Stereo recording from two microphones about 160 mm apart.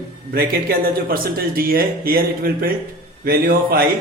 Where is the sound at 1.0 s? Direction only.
65° right (ahead or behind).